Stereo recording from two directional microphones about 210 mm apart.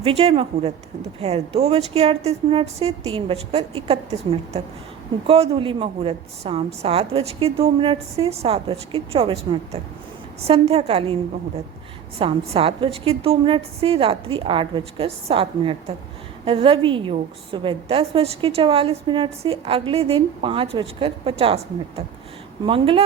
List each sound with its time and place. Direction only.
0.0 s a woman's voice: 25° right (ahead or behind)
12.2 s a woman's voice: 25° right (ahead or behind)